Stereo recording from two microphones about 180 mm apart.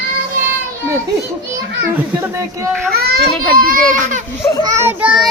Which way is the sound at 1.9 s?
15° right (ahead or behind).